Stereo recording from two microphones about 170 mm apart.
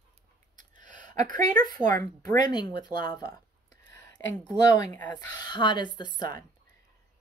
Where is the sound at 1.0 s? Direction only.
50° right (ahead or behind).